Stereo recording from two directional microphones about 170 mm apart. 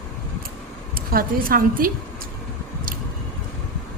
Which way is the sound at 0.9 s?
55° right (ahead or behind).